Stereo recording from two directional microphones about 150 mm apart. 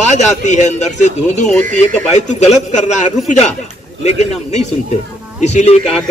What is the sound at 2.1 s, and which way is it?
A man's voice, 50° left (ahead or behind).